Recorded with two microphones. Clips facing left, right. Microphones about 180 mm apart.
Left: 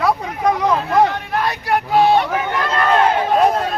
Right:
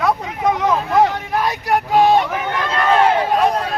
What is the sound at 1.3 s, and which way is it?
Speech, 15° right (ahead or behind).